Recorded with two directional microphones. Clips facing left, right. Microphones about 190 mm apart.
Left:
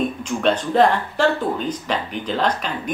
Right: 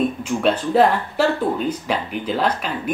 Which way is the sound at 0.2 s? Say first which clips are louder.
Right 1 dB; 5° right (ahead or behind).